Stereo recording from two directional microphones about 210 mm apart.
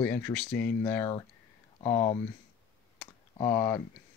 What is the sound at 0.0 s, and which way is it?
Speech, 10° left (ahead or behind).